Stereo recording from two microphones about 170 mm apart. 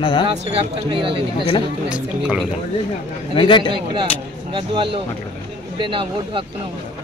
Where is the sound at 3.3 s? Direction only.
30° left (ahead or behind).